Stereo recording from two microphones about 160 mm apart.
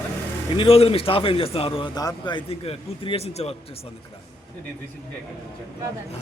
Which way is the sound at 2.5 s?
35° left (ahead or behind).